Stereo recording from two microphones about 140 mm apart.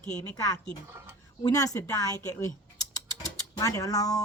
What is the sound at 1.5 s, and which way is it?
Speech, 25° left (ahead or behind).